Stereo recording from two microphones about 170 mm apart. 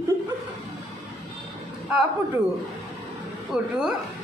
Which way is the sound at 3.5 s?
5° right (ahead or behind).